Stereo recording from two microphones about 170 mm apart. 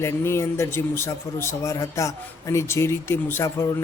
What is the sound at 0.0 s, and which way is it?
Speech, 15° left (ahead or behind).